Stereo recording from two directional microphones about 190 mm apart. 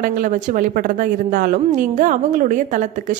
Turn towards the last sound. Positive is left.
turn(degrees=-40)  # may be behind; listen again after turning